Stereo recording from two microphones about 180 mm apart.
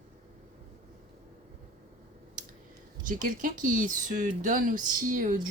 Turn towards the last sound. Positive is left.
turn(degrees=-45)  # may be behind; listen again after turning